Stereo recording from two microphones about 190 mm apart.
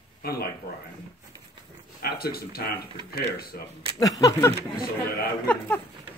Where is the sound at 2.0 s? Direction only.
55° left (ahead or behind).